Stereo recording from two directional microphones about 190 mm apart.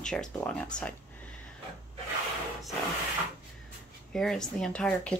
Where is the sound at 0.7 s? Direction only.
5° left (ahead or behind).